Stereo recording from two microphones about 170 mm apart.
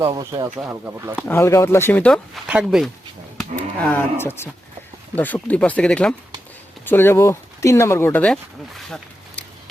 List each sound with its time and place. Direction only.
0.0 s speech: 20° right (ahead or behind)
1.3 s speech: 15° left (ahead or behind)
2.5 s speech: 5° right (ahead or behind)
3.8 s speech: 10° left (ahead or behind)